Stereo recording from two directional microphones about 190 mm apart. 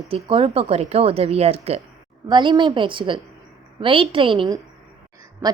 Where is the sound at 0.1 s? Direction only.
30° right (ahead or behind).